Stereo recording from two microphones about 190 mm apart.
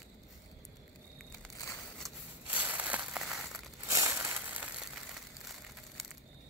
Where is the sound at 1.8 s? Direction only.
Centre (ahead or behind).